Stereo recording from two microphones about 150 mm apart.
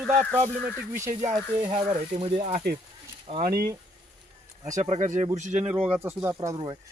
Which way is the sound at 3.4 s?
85° right.